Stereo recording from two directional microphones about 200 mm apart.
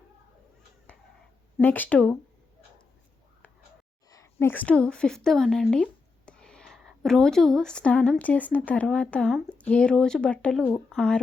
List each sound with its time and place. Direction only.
1.5 s speech: 10° left (ahead or behind)
4.1 s a woman's voice: 15° left (ahead or behind)